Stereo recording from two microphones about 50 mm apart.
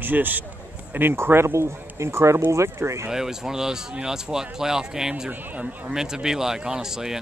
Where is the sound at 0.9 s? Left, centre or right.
Right.